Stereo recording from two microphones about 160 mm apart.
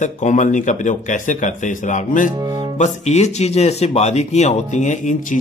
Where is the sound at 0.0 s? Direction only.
50° left (ahead or behind).